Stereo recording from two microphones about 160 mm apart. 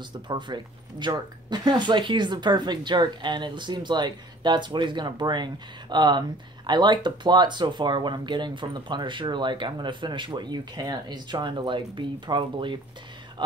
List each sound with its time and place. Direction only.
0.3 s speech: 30° right (ahead or behind)